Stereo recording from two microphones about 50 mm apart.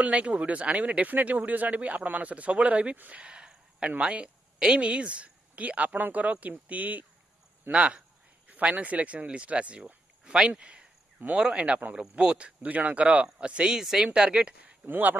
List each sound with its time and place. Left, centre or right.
0.0 s speech: right
14.9 s speech: right